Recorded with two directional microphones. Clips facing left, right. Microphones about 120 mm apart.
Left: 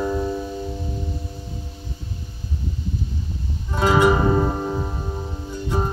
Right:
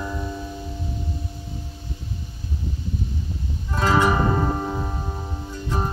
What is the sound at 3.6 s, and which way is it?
Music, 15° left (ahead or behind).